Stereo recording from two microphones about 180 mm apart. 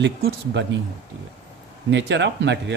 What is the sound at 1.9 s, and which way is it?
Speech, 75° right (ahead or behind).